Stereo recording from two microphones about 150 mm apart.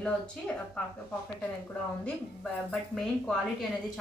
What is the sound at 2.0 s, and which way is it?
A woman's voice, 5° left (ahead or behind).